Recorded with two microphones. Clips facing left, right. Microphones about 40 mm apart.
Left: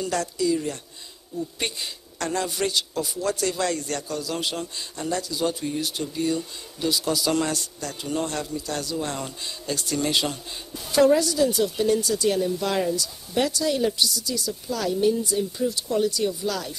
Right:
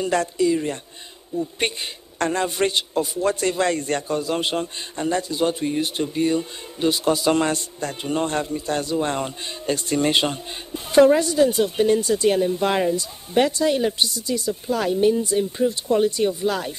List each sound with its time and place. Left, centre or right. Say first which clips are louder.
0.0 s a man's voice: right 5 dB; right